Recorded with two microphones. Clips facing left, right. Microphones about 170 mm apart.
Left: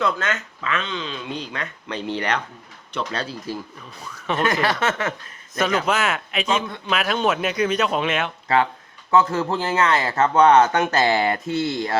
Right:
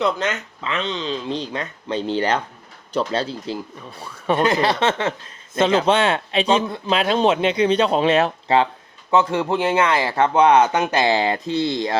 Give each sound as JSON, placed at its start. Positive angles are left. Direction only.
{"t": 0.0, "sound": "speech", "side_deg": -20}
{"t": 9.0, "sound": "speech", "side_deg": -15}